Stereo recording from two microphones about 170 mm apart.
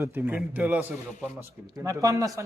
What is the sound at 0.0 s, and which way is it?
A man's voice, 10° right (ahead or behind).